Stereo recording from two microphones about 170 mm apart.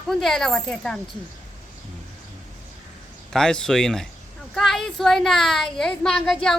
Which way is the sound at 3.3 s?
5° left (ahead or behind).